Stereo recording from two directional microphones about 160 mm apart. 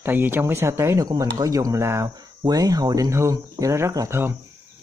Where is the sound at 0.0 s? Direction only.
15° right (ahead or behind).